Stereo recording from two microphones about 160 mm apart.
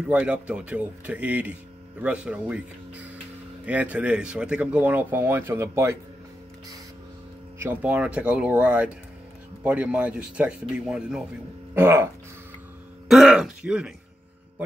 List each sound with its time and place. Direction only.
0.0 s speech: 5° right (ahead or behind)
7.5 s speech: 15° right (ahead or behind)
11.7 s speech: 15° right (ahead or behind)
13.1 s speech: centre (ahead or behind)